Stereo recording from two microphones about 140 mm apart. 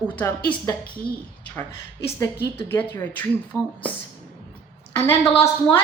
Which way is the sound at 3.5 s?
20° right (ahead or behind).